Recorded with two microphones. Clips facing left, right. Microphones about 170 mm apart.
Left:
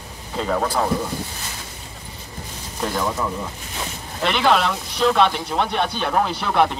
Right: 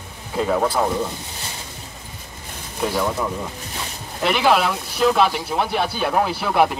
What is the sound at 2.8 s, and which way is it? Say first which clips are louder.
Speech: right 2 dB; 10° right (ahead or behind).